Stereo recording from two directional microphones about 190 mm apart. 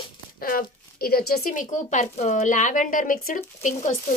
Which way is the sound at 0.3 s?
50° left (ahead or behind).